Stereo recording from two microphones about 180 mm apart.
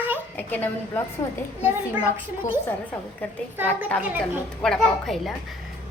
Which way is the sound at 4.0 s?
10° right (ahead or behind).